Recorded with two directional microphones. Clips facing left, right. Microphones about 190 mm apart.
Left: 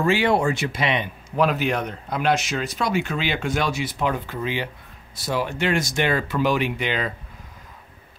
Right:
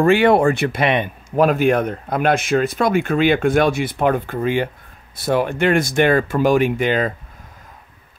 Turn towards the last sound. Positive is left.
turn(degrees=-45)  # may be behind; listen again after turning